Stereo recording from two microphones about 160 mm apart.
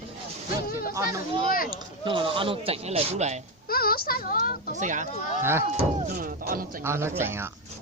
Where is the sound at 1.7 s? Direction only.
30° right (ahead or behind).